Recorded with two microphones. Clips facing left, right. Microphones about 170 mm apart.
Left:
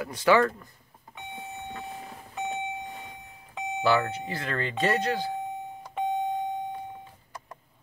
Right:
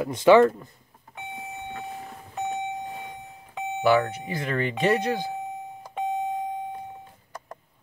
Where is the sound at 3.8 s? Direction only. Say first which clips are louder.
Right 3 dB; 15° right (ahead or behind).